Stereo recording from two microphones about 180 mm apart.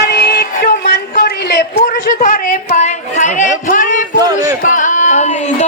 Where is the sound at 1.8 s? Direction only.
55° left (ahead or behind).